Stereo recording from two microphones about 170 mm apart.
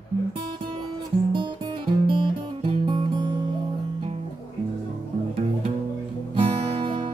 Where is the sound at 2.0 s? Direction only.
30° right (ahead or behind).